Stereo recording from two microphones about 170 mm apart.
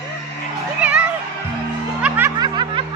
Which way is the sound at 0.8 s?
10° right (ahead or behind).